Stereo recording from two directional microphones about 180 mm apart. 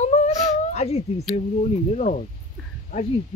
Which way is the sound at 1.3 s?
35° left (ahead or behind).